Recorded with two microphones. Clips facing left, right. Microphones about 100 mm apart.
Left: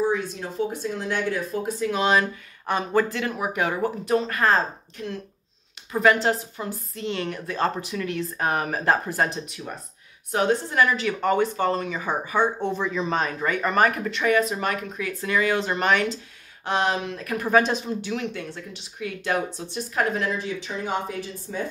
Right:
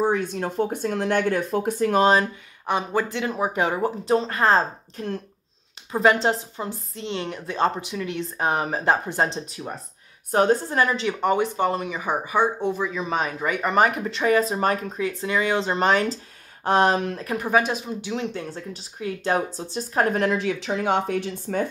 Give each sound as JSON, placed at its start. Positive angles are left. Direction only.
{"t": 0.0, "sound": "speech", "side_deg": -60}
{"t": 2.6, "sound": "speech", "side_deg": -15}
{"t": 10.3, "sound": "speech", "side_deg": -35}
{"t": 14.1, "sound": "speech", "side_deg": -30}
{"t": 17.4, "sound": "speech", "side_deg": -10}
{"t": 18.1, "sound": "speech", "side_deg": -30}
{"t": 20.2, "sound": "speech", "side_deg": -75}